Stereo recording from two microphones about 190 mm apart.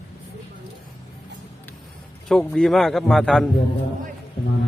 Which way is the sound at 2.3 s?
5° left (ahead or behind).